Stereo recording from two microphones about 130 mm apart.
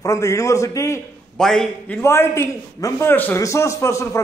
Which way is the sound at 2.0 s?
20° left (ahead or behind).